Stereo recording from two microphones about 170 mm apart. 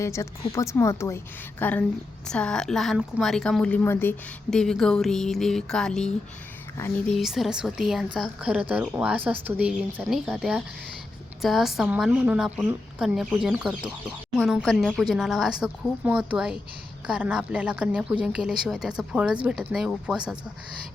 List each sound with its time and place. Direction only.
0.0 s a woman's voice: 15° left (ahead or behind); by 20.4 s 5° right (ahead or behind)